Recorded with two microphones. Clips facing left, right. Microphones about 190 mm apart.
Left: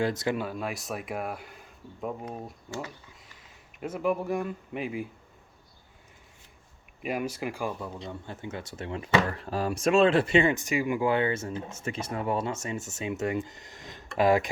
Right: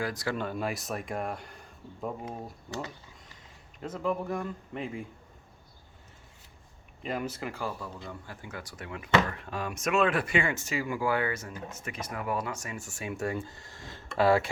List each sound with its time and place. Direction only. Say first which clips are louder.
0.0 s speech: left 5 dB; 25° left (ahead or behind)
0.3 s speech: even; centre (ahead or behind)
3.8 s speech: left 3 dB; 10° left (ahead or behind)
7.0 s speech: left 3 dB; 10° left (ahead or behind)